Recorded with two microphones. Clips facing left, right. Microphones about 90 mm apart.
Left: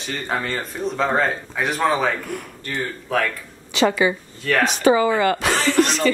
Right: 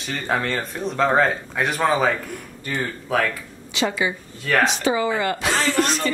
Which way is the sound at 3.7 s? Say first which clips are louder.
Left 5 dB; 60° left (ahead or behind).